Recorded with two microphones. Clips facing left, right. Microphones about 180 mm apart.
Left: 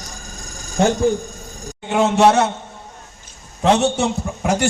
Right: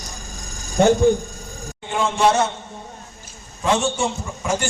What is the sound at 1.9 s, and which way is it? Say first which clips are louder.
Speech: left 5 dB; 70° left (ahead or behind).